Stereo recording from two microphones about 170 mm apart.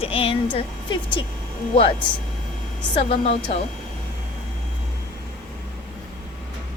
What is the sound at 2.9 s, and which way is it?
Speech, 30° left (ahead or behind).